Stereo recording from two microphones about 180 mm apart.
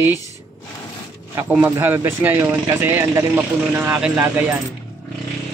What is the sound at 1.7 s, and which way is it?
Speech, 10° right (ahead or behind).